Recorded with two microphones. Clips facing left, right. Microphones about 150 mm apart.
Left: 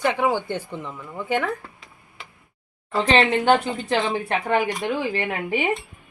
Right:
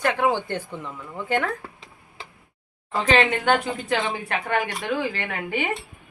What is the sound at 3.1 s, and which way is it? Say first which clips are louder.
A woman's voice: left 2 dB; 30° left (ahead or behind).